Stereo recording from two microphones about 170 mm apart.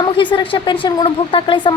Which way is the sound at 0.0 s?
30° left (ahead or behind).